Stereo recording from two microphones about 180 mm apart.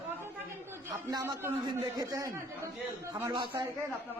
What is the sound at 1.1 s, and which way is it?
A man's voice, 15° right (ahead or behind).